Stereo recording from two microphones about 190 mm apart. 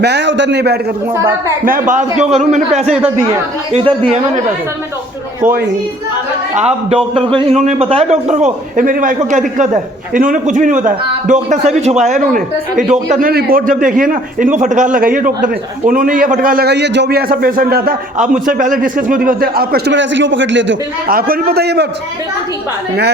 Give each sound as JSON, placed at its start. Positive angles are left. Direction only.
{"t": 0.0, "sound": "a man's voice", "side_deg": -65}
{"t": 1.1, "sound": "a woman's voice", "side_deg": -15}
{"t": 1.9, "sound": "a man's voice", "side_deg": -40}
{"t": 2.9, "sound": "a woman's voice", "side_deg": -10}
{"t": 3.7, "sound": "a man's voice", "side_deg": -30}
{"t": 6.9, "sound": "a man's voice", "side_deg": -30}
{"t": 21.1, "sound": "a man's voice", "side_deg": -50}